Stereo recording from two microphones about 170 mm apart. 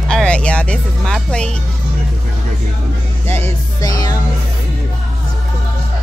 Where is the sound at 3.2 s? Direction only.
15° left (ahead or behind).